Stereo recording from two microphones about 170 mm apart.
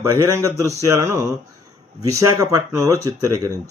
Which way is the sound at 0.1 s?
15° right (ahead or behind).